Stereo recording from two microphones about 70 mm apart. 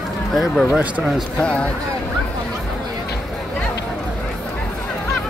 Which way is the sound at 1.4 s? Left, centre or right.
Centre.